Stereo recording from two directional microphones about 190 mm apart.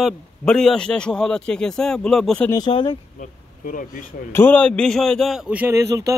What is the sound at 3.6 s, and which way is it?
Speech, 45° left (ahead or behind).